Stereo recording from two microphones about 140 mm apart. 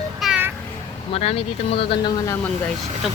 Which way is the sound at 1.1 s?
45° left (ahead or behind).